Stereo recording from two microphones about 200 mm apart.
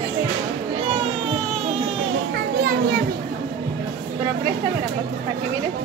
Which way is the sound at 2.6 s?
50° right (ahead or behind).